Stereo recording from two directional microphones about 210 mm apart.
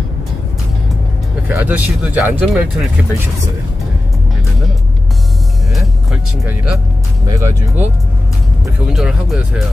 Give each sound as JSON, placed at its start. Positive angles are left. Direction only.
{"t": 1.5, "sound": "speech", "side_deg": -10}
{"t": 7.2, "sound": "speech", "side_deg": -15}